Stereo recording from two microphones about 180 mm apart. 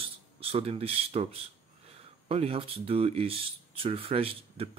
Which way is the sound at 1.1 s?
35° right (ahead or behind).